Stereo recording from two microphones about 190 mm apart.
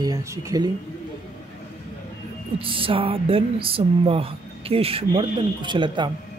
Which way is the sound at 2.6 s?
30° right (ahead or behind).